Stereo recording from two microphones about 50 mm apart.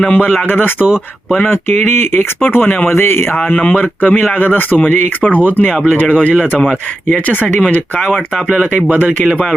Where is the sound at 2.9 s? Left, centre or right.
Left.